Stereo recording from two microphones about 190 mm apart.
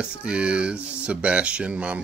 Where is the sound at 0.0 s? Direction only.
5° right (ahead or behind).